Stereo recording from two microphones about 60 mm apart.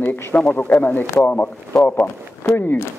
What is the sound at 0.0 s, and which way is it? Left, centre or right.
Speech, left.